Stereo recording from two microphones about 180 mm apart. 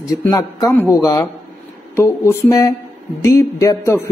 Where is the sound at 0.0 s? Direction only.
20° left (ahead or behind).